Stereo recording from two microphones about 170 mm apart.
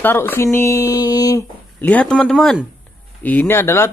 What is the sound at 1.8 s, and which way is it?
Speech, 10° left (ahead or behind).